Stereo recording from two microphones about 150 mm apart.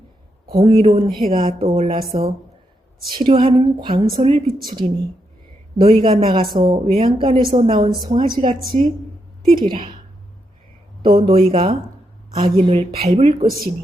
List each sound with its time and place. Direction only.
0.5 s a woman's voice: 35° right (ahead or behind)
11.0 s speech: 35° right (ahead or behind)